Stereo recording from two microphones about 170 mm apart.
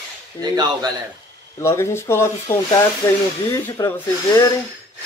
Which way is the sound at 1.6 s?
15° left (ahead or behind).